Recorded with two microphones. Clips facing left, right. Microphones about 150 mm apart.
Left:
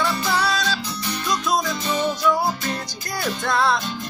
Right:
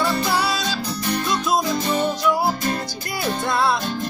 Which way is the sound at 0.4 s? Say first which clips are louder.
Even; 5° right (ahead or behind).